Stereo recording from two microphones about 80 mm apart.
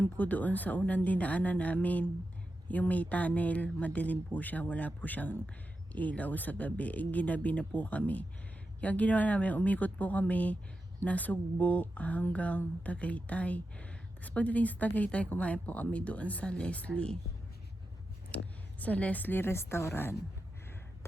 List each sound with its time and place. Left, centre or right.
0.0 s speech: left
18.3 s speech: centre